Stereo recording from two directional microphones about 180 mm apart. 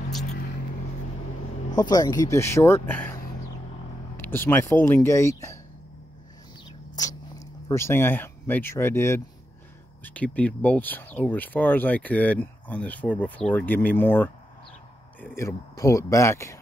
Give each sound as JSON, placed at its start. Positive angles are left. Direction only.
{"t": 1.8, "sound": "speech", "side_deg": 20}
{"t": 4.2, "sound": "speech", "side_deg": 10}
{"t": 7.0, "sound": "speech", "side_deg": 20}